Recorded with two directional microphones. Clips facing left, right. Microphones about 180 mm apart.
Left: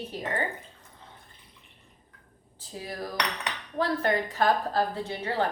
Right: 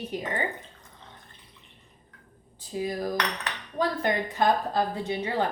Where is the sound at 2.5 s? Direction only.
15° right (ahead or behind).